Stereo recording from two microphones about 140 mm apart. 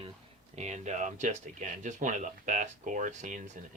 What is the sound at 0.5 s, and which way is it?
Speech, 55° right (ahead or behind).